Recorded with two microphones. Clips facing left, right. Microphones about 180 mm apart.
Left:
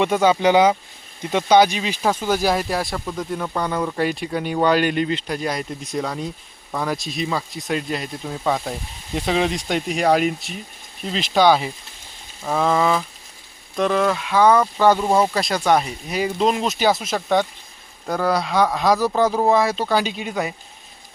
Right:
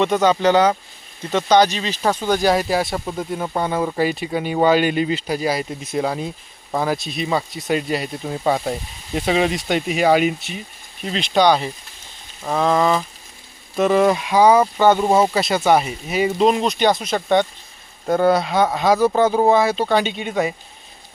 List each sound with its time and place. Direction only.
0.0 s speech: 10° left (ahead or behind)
3.3 s speech: 20° right (ahead or behind)
3.9 s speech: centre (ahead or behind)
13.7 s speech: 10° right (ahead or behind)